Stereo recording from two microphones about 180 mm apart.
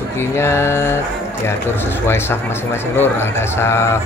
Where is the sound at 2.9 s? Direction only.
10° left (ahead or behind).